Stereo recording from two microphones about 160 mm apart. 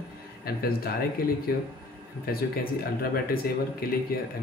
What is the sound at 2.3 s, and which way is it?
Speech, 70° left (ahead or behind).